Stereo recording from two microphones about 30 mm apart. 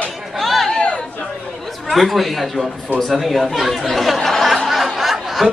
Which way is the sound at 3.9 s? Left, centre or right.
Centre.